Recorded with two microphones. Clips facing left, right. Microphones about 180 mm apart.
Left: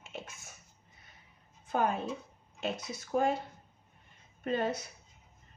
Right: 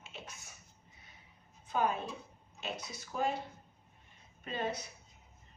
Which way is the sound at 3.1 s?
50° left (ahead or behind).